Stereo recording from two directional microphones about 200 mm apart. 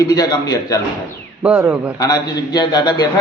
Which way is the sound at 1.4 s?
5° right (ahead or behind).